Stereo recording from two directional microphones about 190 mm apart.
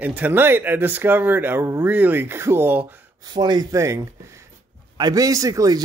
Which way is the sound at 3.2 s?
20° right (ahead or behind).